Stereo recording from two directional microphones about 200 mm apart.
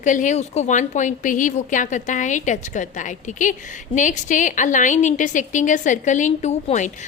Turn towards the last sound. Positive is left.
turn(degrees=35)  # may be behind; listen again after turning